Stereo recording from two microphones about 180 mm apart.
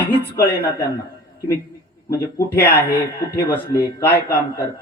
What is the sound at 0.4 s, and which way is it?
Speech, 60° left (ahead or behind).